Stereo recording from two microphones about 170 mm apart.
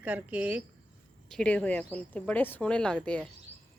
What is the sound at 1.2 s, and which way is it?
Speech, 5° left (ahead or behind).